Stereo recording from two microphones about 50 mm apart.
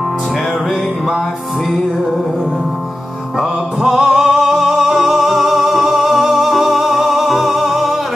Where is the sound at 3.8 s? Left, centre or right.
Centre.